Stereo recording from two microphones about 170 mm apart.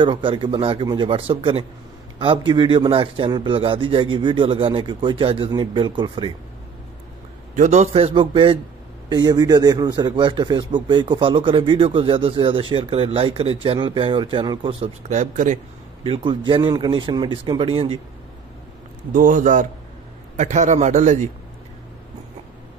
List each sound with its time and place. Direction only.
0.0 s a man's voice: 30° right (ahead or behind)
7.5 s a man's voice: 45° right (ahead or behind)
15.0 s a man's voice: 45° right (ahead or behind)
16.0 s a man's voice: 30° right (ahead or behind)
19.1 s a man's voice: 50° right (ahead or behind)